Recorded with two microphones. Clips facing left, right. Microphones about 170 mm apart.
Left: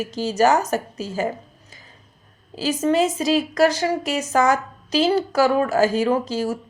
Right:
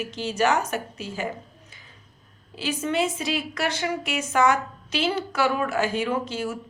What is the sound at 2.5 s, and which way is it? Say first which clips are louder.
A woman's voice: left 7 dB; 40° left (ahead or behind).